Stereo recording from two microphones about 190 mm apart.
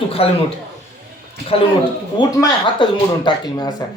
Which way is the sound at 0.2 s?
30° left (ahead or behind).